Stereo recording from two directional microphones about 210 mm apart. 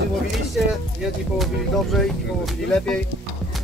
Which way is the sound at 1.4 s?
Centre (ahead or behind).